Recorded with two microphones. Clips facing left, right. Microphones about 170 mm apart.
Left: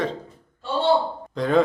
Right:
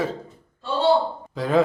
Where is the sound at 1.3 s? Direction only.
5° right (ahead or behind).